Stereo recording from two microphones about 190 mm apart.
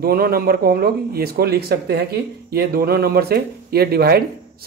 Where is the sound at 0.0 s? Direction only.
50° right (ahead or behind).